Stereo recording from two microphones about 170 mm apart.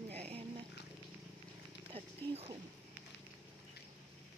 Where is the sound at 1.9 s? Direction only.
35° right (ahead or behind).